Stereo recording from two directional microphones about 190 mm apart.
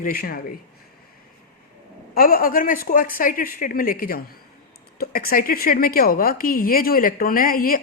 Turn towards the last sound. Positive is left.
turn(degrees=50)  # may be behind; listen again after turning